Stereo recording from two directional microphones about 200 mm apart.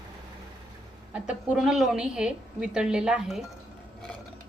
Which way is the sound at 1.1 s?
5° right (ahead or behind).